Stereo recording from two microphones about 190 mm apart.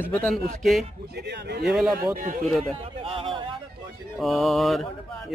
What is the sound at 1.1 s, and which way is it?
Speech, 60° right (ahead or behind).